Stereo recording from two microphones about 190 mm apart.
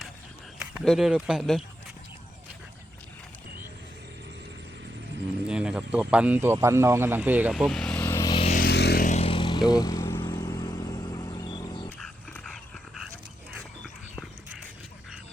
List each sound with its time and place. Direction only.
0.7 s speech: centre (ahead or behind)
5.5 s speech: 5° right (ahead or behind)
7.5 s vehicle: centre (ahead or behind)
8.5 s vehicle: 55° left (ahead or behind)
9.0 s vehicle: 35° left (ahead or behind)
11.9 s dog: 5° left (ahead or behind)